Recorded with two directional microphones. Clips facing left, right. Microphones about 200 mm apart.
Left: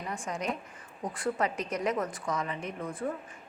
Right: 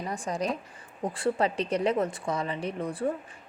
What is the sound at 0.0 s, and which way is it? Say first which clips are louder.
A woman's voice: right 4 dB; 35° right (ahead or behind).